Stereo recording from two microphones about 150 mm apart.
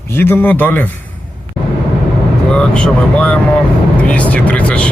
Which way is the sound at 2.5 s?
5° left (ahead or behind).